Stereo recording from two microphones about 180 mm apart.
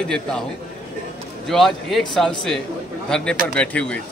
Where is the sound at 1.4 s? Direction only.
Centre (ahead or behind).